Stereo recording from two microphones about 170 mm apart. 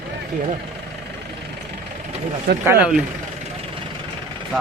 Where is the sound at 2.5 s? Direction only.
65° right (ahead or behind).